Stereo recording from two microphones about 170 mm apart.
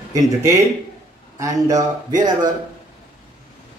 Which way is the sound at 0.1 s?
20° right (ahead or behind).